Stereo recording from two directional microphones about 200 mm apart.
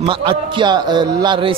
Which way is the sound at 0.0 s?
25° right (ahead or behind).